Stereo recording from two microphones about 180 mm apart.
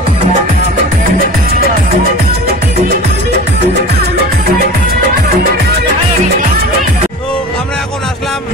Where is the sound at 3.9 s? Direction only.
60° right (ahead or behind).